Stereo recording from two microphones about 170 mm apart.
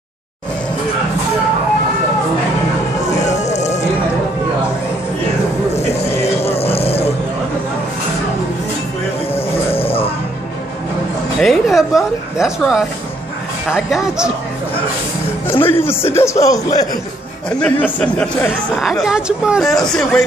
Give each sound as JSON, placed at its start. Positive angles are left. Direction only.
{"t": 3.3, "sound": "music", "side_deg": 45}
{"t": 6.2, "sound": "music", "side_deg": 35}
{"t": 9.8, "sound": "music", "side_deg": 35}
{"t": 11.3, "sound": "speech", "side_deg": 0}
{"t": 15.4, "sound": "speech", "side_deg": 15}
{"t": 17.5, "sound": "speech", "side_deg": 5}